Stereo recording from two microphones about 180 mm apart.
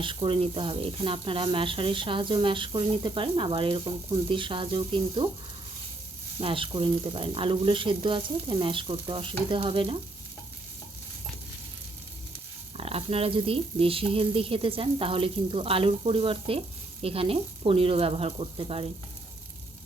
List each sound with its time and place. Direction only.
0.0 s speech: 30° right (ahead or behind)
6.4 s speech: 30° right (ahead or behind)
12.7 s speech: 35° right (ahead or behind)